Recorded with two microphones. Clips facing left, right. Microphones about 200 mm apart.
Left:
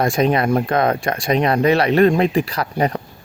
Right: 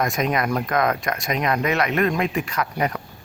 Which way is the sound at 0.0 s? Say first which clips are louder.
Left 6 dB; 30° left (ahead or behind).